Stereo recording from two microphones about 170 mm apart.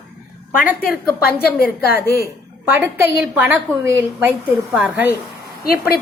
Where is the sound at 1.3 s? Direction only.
65° left (ahead or behind).